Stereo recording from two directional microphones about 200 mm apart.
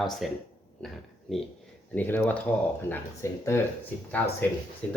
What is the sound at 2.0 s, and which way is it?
Speech, 10° left (ahead or behind).